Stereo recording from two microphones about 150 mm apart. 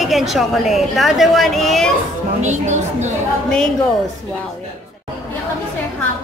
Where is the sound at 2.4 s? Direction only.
50° right (ahead or behind).